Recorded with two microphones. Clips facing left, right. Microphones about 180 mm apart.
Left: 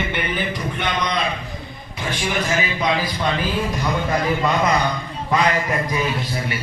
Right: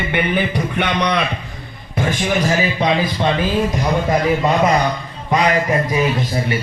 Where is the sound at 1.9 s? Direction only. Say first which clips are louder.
Right 6 dB; 45° right (ahead or behind).